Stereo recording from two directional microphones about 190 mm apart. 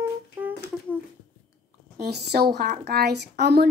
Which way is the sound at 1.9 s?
60° right (ahead or behind).